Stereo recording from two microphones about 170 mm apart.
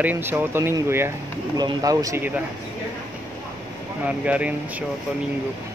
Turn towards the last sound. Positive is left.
turn(degrees=-10)  # may be behind; listen again after turning